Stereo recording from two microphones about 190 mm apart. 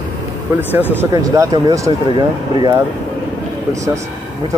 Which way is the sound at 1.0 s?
15° right (ahead or behind).